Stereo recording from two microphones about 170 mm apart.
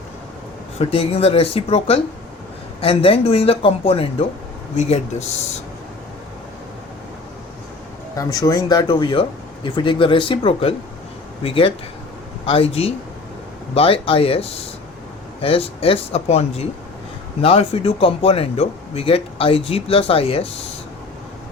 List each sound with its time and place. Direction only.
0.8 s speech: 35° left (ahead or behind)
8.1 s speech: 20° left (ahead or behind)